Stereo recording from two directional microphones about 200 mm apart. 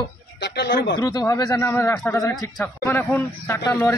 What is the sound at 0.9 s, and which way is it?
A man's voice, 20° left (ahead or behind).